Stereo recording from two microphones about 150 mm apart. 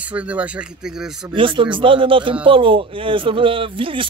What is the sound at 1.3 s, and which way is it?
Speech, 35° right (ahead or behind).